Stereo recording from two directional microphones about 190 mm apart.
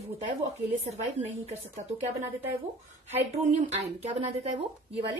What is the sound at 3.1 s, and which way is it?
Speech, 35° right (ahead or behind).